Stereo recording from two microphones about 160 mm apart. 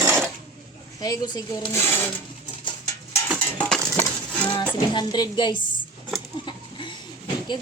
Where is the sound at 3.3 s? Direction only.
5° left (ahead or behind).